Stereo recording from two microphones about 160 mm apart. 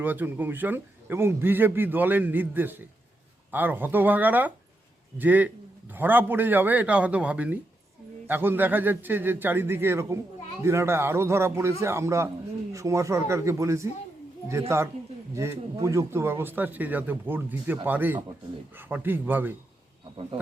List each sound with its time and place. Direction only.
0.0 s a man's voice: 10° right (ahead or behind)
15.4 s a man's voice: 15° right (ahead or behind)